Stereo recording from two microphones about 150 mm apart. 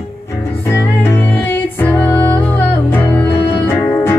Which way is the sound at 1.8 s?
10° left (ahead or behind).